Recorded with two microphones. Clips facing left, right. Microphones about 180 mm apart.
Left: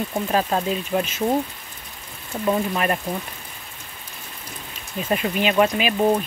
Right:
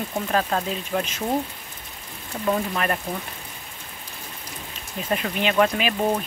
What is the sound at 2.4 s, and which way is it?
Speech, 15° left (ahead or behind).